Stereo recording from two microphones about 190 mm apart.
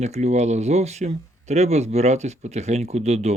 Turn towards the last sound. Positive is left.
turn(degrees=-35)  # may be behind; listen again after turning